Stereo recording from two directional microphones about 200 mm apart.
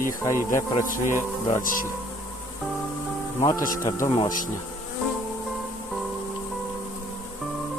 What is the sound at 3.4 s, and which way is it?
Speech, 15° left (ahead or behind).